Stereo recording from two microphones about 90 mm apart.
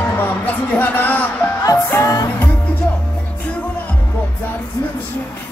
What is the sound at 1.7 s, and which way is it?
Music, 35° left (ahead or behind).